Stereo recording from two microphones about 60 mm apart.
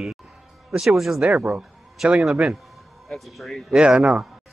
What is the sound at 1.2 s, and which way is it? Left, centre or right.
Speech, right.